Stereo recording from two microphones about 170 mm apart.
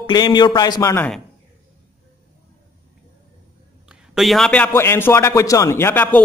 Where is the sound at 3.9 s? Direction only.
Centre (ahead or behind).